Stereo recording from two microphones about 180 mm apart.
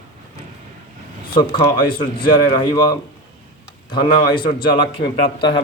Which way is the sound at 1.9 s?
25° left (ahead or behind).